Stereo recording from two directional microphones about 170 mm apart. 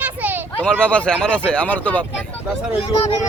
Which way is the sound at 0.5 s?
5° left (ahead or behind).